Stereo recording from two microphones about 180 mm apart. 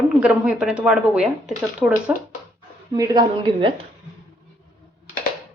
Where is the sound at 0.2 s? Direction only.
5° right (ahead or behind).